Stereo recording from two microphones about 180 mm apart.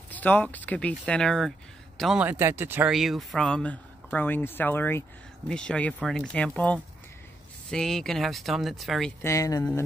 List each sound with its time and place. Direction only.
0.1 s a man's voice: 10° left (ahead or behind)
2.2 s speech: 15° right (ahead or behind)
9.2 s speech: 15° left (ahead or behind)